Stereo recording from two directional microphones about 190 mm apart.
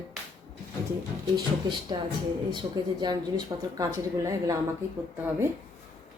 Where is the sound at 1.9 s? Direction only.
20° right (ahead or behind).